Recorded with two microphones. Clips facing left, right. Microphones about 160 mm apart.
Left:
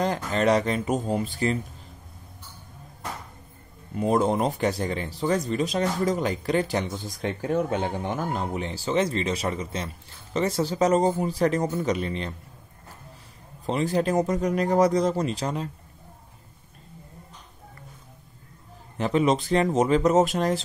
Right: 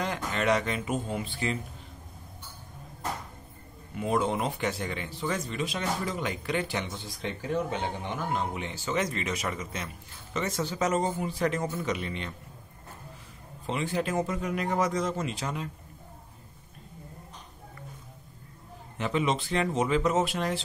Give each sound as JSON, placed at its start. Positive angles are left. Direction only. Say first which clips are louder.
{"t": 0.0, "sound": "speech", "louder": "left 6 dB", "side_deg": 35}
{"t": 3.9, "sound": "speech", "louder": "left 5 dB", "side_deg": 40}
{"t": 13.7, "sound": "speech", "louder": "left 6 dB", "side_deg": 40}
{"t": 18.9, "sound": "speech", "louder": "left 6 dB", "side_deg": 40}